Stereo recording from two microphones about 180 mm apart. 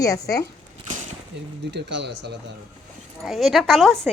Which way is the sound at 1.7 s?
75° right (ahead or behind).